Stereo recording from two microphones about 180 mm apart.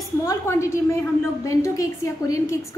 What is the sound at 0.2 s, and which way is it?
A woman's voice, 15° left (ahead or behind).